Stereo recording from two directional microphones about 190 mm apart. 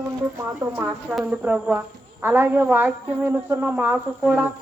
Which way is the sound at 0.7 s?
10° right (ahead or behind).